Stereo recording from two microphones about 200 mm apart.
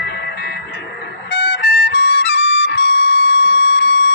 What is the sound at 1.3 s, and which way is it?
Music, 55° left (ahead or behind).